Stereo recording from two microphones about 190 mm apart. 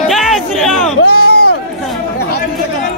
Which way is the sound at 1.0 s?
55° left (ahead or behind).